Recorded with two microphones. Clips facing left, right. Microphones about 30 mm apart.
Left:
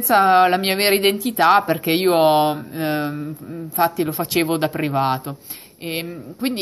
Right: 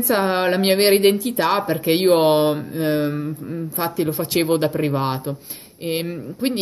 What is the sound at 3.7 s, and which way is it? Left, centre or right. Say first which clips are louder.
A woman's voice: left 4 dB; centre.